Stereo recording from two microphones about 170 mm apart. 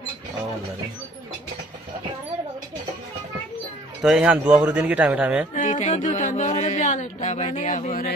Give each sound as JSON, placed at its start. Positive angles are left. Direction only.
{"t": 4.0, "sound": "speech", "side_deg": -5}
{"t": 5.5, "sound": "speech", "side_deg": 50}